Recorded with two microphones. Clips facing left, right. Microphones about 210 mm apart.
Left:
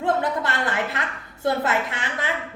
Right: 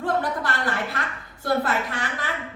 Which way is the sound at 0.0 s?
20° left (ahead or behind).